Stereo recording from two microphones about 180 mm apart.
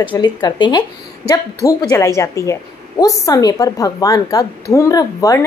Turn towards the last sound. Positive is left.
turn(degrees=20)  # may be behind; listen again after turning